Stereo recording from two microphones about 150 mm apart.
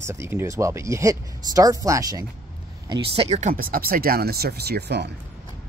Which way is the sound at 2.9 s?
40° right (ahead or behind).